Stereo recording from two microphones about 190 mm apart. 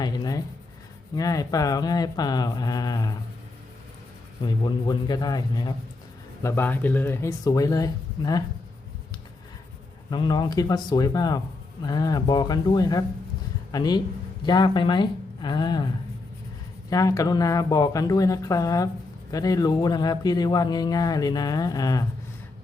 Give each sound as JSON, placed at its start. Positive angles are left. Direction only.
{"t": 0.0, "sound": "writing", "side_deg": 20}
{"t": 1.1, "sound": "speech", "side_deg": 20}
{"t": 4.4, "sound": "speech", "side_deg": 25}
{"t": 10.1, "sound": "speech", "side_deg": 20}
{"t": 16.9, "sound": "speech", "side_deg": 15}